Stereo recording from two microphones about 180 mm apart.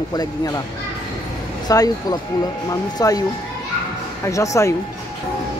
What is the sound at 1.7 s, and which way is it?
Speech, 20° left (ahead or behind).